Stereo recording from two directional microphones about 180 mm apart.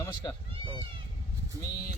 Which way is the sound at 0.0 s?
20° left (ahead or behind).